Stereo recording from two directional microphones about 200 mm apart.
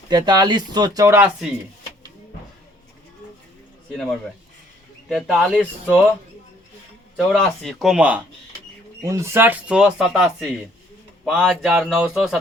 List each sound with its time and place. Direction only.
0.1 s speech: 20° right (ahead or behind)
3.9 s speech: 5° left (ahead or behind)
7.2 s speech: centre (ahead or behind)